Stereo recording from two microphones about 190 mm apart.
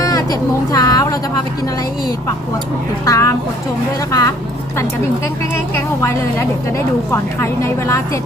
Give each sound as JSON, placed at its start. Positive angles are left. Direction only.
{"t": 0.0, "sound": "speech", "side_deg": 20}
{"t": 3.1, "sound": "a woman's voice", "side_deg": 15}
{"t": 5.7, "sound": "a woman's voice", "side_deg": 15}